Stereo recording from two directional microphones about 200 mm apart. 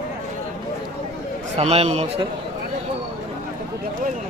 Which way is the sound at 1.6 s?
30° right (ahead or behind).